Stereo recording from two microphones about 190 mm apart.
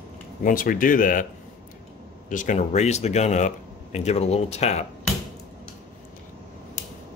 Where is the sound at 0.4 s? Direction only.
45° left (ahead or behind).